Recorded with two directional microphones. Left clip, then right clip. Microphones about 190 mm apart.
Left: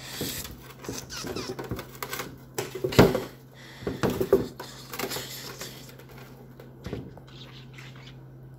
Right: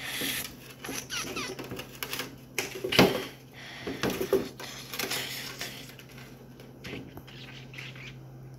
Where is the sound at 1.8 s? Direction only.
60° left (ahead or behind).